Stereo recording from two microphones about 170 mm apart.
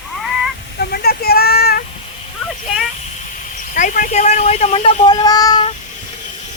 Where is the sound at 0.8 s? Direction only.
65° left (ahead or behind).